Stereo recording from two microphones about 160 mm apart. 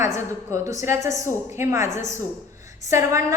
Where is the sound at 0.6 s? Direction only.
50° left (ahead or behind).